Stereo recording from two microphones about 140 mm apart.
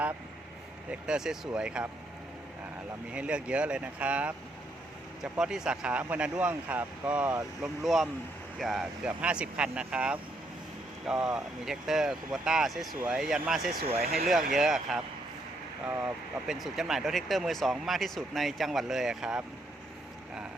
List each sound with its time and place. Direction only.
0.9 s speech: 5° right (ahead or behind)
3.1 s speech: 10° right (ahead or behind)
14.0 s speech: 90° right
14.5 s speech: centre (ahead or behind)
16.6 s speech: centre (ahead or behind)